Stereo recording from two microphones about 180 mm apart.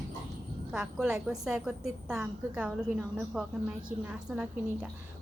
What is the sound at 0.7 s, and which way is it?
A woman's voice, 5° right (ahead or behind).